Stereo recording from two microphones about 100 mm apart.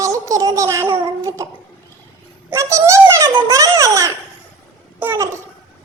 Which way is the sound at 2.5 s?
30° right (ahead or behind).